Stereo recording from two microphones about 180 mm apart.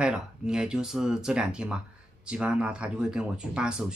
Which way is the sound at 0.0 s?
5° right (ahead or behind).